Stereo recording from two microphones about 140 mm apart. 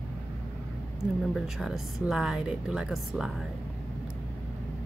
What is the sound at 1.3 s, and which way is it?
A woman's voice, centre (ahead or behind).